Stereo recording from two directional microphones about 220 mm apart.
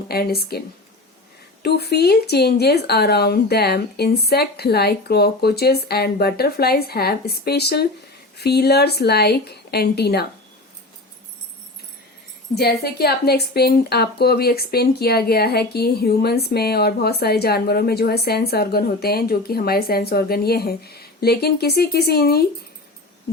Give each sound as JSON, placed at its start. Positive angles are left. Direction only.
{"t": 0.1, "sound": "speech", "side_deg": 45}
{"t": 1.6, "sound": "speech", "side_deg": 45}
{"t": 12.5, "sound": "speech", "side_deg": 45}